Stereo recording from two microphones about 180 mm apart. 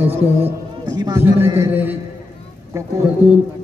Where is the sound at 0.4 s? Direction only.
25° right (ahead or behind).